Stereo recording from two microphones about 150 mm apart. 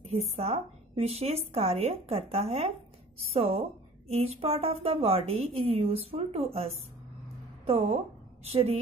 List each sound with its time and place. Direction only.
0.0 s a woman's voice: 45° right (ahead or behind)